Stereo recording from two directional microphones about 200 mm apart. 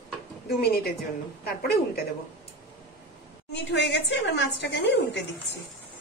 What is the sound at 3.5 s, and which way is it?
A woman's voice, 60° left (ahead or behind).